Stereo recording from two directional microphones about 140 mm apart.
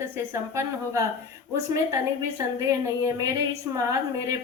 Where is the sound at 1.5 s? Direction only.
25° right (ahead or behind).